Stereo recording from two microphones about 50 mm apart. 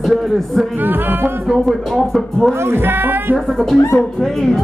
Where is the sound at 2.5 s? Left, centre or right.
Right.